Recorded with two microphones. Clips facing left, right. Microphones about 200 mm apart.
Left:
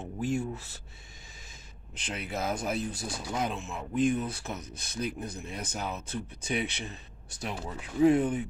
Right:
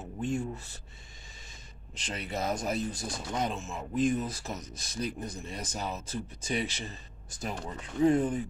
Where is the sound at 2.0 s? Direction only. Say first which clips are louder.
Even; centre (ahead or behind).